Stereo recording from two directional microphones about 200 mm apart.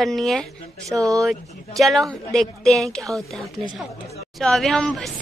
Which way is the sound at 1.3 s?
Centre (ahead or behind).